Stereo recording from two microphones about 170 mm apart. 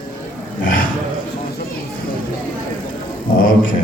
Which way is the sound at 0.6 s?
55° left (ahead or behind).